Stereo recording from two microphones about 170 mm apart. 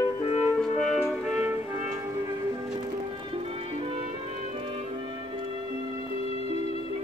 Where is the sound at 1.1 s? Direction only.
10° right (ahead or behind).